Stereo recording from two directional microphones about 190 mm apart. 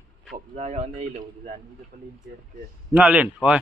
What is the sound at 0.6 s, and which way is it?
Speech, 40° right (ahead or behind).